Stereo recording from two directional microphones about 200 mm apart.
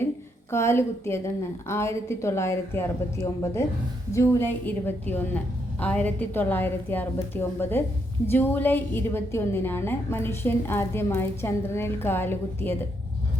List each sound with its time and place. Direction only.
0.5 s a woman's voice: 15° left (ahead or behind)